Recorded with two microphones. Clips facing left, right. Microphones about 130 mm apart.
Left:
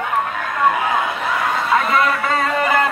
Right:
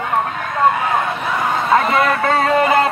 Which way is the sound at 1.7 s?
30° right (ahead or behind).